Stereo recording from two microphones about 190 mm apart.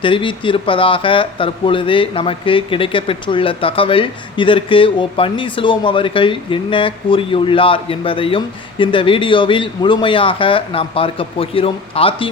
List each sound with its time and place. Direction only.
0.0 s speech: 25° left (ahead or behind)